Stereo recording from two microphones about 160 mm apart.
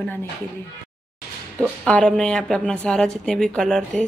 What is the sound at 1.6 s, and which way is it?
Speech, 5° left (ahead or behind).